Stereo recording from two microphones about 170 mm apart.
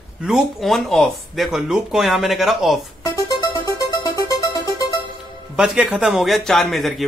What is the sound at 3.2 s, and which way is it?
Music, 20° left (ahead or behind).